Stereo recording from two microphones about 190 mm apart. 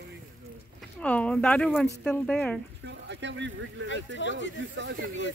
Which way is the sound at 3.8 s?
75° left (ahead or behind).